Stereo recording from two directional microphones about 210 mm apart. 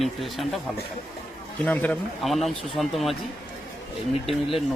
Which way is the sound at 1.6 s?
5° left (ahead or behind).